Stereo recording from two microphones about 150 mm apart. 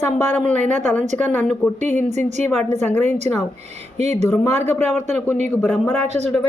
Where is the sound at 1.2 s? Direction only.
10° left (ahead or behind).